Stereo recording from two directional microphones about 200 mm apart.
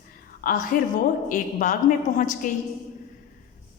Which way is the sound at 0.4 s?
40° left (ahead or behind).